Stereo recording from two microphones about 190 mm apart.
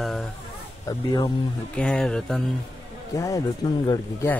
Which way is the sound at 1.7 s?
5° left (ahead or behind).